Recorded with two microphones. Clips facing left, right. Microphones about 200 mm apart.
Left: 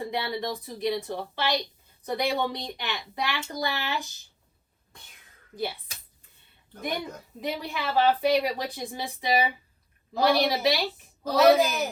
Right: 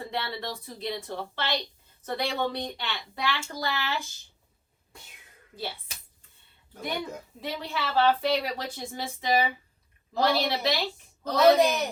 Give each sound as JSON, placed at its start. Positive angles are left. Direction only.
{"t": 0.0, "sound": "speech", "side_deg": 15}
{"t": 7.4, "sound": "a woman's voice", "side_deg": 15}